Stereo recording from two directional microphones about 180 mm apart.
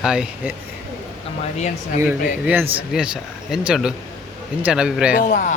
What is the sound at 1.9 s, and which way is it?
Speech, 10° right (ahead or behind).